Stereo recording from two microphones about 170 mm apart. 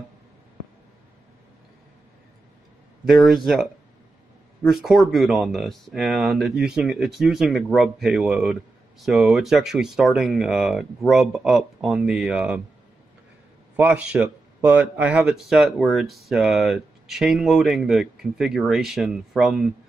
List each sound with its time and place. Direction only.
3.2 s speech: centre (ahead or behind)
4.6 s speech: centre (ahead or behind)
13.7 s speech: 10° right (ahead or behind)